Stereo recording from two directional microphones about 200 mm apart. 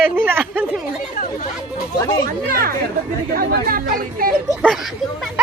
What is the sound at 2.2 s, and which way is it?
Speech, 45° right (ahead or behind).